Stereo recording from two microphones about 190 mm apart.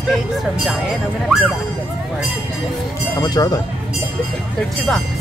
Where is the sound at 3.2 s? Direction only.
20° left (ahead or behind).